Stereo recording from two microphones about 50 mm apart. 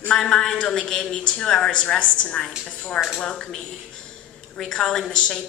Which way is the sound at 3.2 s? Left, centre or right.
Centre.